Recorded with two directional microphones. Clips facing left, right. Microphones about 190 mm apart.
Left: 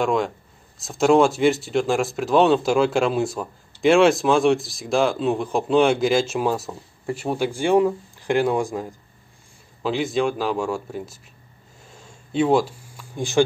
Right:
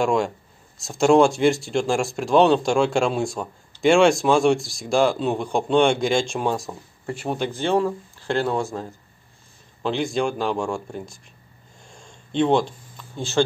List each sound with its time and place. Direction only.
0.0 s speech: centre (ahead or behind)
9.8 s speech: centre (ahead or behind)
11.9 s a sound: 5° left (ahead or behind)